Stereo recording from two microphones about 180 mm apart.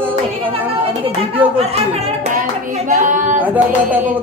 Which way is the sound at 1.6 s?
35° right (ahead or behind).